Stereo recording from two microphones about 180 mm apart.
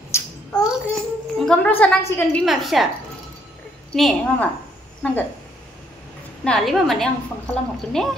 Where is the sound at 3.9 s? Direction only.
Centre (ahead or behind).